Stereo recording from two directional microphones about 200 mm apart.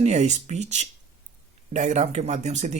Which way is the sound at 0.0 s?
35° right (ahead or behind).